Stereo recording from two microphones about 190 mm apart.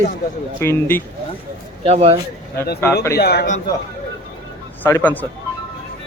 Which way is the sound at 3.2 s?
55° left (ahead or behind).